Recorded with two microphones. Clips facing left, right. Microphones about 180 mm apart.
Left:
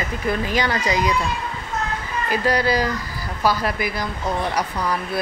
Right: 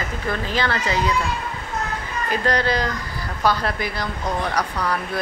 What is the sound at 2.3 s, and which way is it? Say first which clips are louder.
A woman's voice: left 1 dB; 10° left (ahead or behind).